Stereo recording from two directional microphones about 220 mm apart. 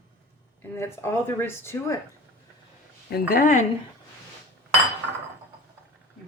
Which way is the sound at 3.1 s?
40° left (ahead or behind).